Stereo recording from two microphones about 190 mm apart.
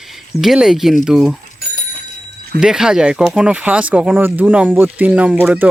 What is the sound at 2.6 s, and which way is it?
Speech, 5° right (ahead or behind).